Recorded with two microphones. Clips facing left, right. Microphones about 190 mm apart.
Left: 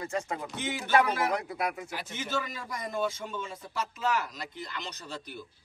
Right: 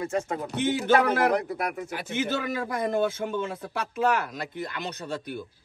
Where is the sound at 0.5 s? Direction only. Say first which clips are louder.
Right 7 dB; 60° right (ahead or behind).